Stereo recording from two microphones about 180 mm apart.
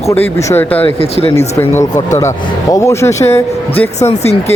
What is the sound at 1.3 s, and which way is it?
Speech, 15° left (ahead or behind).